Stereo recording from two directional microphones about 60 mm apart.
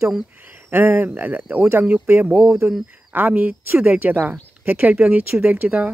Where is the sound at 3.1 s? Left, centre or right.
Right.